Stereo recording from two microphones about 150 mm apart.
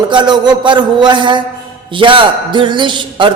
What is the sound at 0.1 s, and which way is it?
A man's voice, 30° right (ahead or behind).